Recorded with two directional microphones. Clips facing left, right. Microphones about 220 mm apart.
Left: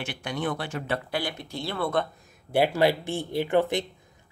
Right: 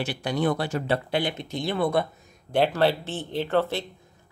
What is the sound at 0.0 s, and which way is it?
Speech, 35° right (ahead or behind).